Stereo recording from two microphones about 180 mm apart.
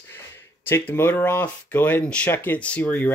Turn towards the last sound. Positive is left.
turn(degrees=10)  # may be behind; listen again after turning